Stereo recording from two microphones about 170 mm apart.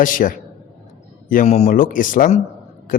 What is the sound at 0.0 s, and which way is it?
A man's voice, 50° left (ahead or behind).